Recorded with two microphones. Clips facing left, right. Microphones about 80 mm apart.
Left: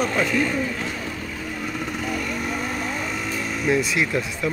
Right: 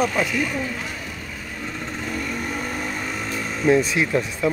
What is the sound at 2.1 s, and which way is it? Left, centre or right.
Vehicle, centre.